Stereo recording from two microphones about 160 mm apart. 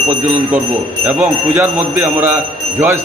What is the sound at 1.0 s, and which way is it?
A man's voice, 10° right (ahead or behind).